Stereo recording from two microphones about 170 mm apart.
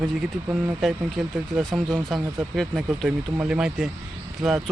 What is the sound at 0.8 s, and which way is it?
Speech, centre (ahead or behind).